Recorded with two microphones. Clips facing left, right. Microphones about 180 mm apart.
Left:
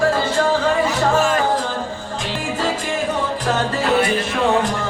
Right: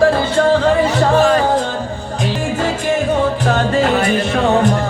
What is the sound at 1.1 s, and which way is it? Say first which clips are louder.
Music: right 7 dB; 35° right (ahead or behind).